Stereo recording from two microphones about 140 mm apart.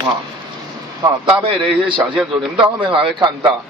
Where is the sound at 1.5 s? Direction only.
35° right (ahead or behind).